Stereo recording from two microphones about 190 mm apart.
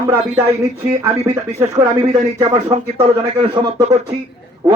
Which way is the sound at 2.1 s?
30° right (ahead or behind).